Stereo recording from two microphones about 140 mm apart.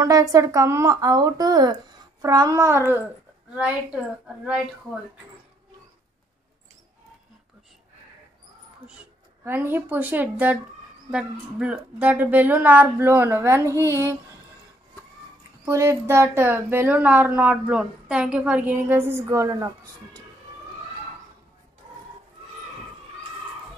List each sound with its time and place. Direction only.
0.0 s speech: 25° right (ahead or behind); by 4.0 s 10° right (ahead or behind)
9.4 s speech: 15° right (ahead or behind)
13.7 s a sound: 20° left (ahead or behind)
15.6 s speech: 20° right (ahead or behind)